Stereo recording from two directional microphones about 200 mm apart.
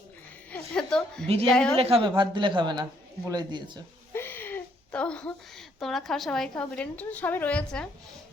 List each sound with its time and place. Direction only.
0.5 s a woman's voice: 5° left (ahead or behind)
1.8 s speech: 30° right (ahead or behind)
4.1 s a woman's voice: 10° left (ahead or behind)